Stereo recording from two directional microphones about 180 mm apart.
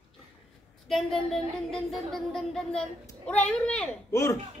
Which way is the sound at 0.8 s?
Centre (ahead or behind).